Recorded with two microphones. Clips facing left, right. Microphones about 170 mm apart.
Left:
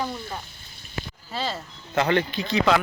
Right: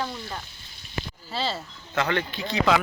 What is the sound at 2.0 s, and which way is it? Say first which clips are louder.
Speech: left 4 dB; 25° left (ahead or behind).